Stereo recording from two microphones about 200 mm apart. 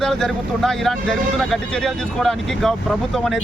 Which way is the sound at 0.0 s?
Centre (ahead or behind).